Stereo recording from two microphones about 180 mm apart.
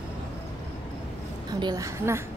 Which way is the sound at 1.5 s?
20° right (ahead or behind).